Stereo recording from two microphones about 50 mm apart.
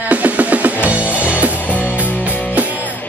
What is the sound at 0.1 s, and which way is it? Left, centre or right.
Music, right.